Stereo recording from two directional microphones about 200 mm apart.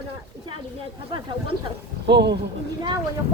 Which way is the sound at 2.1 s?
60° right (ahead or behind).